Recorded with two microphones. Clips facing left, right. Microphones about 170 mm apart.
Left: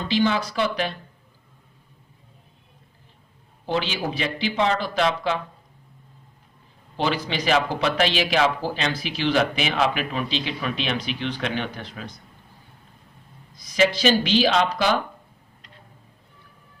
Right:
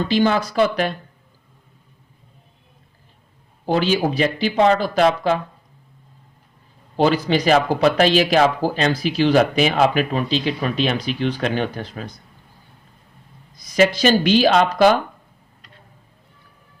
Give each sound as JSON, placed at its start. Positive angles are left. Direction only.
{"t": 0.1, "sound": "speech", "side_deg": -45}
{"t": 3.7, "sound": "speech", "side_deg": -40}
{"t": 6.9, "sound": "speech", "side_deg": -40}
{"t": 13.7, "sound": "speech", "side_deg": -45}